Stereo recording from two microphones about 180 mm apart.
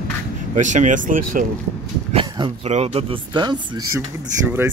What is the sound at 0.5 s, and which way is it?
Speech, 45° right (ahead or behind).